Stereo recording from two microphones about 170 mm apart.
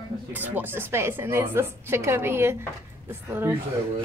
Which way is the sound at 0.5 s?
15° right (ahead or behind).